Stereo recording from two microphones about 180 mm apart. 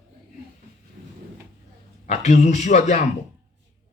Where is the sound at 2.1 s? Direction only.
40° left (ahead or behind).